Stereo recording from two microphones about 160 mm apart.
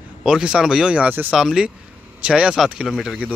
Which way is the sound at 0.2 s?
5° right (ahead or behind).